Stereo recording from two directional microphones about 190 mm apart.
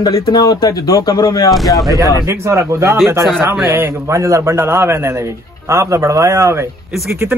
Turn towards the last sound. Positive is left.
turn(degrees=-10)  # may be behind; listen again after turning